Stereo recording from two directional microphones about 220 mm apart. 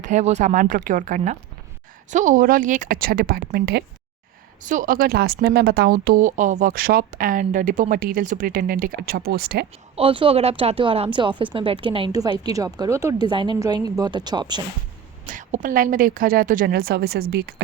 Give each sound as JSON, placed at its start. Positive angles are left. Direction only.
{"t": 0.0, "sound": "a woman's voice", "side_deg": -30}
{"t": 9.9, "sound": "speech", "side_deg": -25}
{"t": 15.3, "sound": "a woman's voice", "side_deg": -35}